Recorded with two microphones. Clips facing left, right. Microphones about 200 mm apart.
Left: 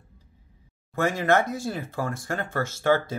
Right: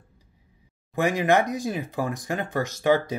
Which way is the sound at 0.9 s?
15° right (ahead or behind).